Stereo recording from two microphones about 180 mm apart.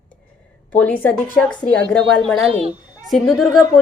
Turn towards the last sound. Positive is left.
turn(degrees=0)  # may be behind; listen again after turning